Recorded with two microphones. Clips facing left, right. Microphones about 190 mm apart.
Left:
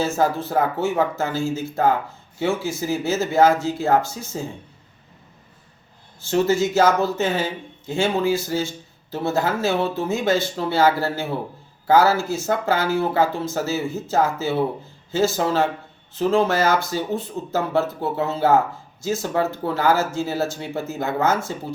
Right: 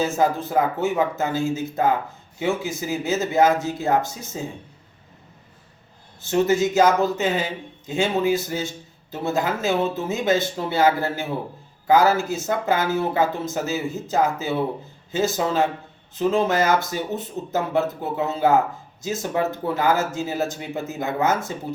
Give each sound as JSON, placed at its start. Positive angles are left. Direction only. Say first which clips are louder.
{"t": 0.0, "sound": "speech", "louder": "even", "side_deg": -15}
{"t": 6.2, "sound": "speech", "louder": "even", "side_deg": -20}